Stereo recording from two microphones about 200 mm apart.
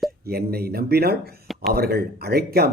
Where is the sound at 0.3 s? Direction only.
50° right (ahead or behind).